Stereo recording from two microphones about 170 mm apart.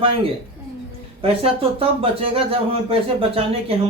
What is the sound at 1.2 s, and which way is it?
Speech, 35° right (ahead or behind).